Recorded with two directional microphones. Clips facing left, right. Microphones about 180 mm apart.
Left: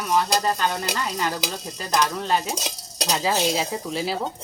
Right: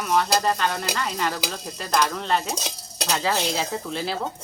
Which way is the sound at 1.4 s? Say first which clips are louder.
Left 1 dB; centre (ahead or behind).